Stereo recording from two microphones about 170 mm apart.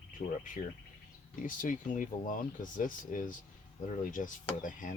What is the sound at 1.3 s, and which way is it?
Speech, 50° left (ahead or behind).